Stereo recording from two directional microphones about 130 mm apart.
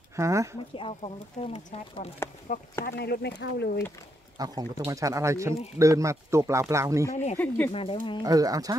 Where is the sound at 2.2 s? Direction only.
20° left (ahead or behind).